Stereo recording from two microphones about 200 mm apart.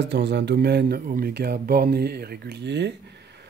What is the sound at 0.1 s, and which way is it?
Speech, 60° right (ahead or behind).